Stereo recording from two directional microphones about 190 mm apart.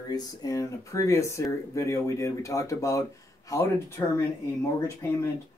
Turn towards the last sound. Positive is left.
turn(degrees=15)  # may be behind; listen again after turning